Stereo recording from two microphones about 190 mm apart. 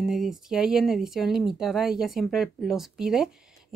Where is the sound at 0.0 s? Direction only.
Centre (ahead or behind).